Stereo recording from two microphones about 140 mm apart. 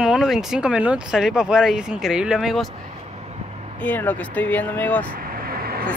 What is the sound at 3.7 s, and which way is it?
Speech, 10° left (ahead or behind).